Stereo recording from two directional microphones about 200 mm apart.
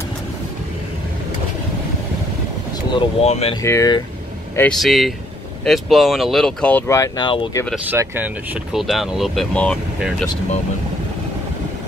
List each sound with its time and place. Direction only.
2.7 s speech: 30° left (ahead or behind)
3.6 s speech: 15° left (ahead or behind)
4.6 s speech: 5° left (ahead or behind); by 7.6 s 25° left (ahead or behind)
7.7 s speech: 10° right (ahead or behind); by 10.1 s 5° left (ahead or behind)